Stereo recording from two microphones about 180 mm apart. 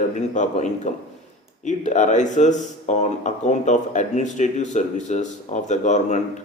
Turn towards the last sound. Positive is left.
turn(degrees=40)  # may be behind; listen again after turning